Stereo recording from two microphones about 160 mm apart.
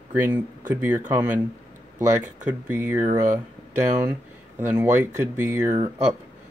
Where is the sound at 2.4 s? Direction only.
10° right (ahead or behind).